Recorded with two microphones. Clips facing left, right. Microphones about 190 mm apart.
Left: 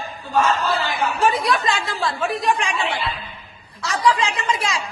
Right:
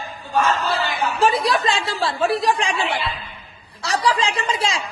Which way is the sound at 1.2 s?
30° right (ahead or behind).